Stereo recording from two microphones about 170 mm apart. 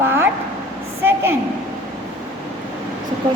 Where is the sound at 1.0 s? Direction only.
15° right (ahead or behind).